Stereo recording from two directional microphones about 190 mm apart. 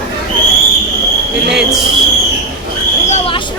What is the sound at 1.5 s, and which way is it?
Speech, centre (ahead or behind).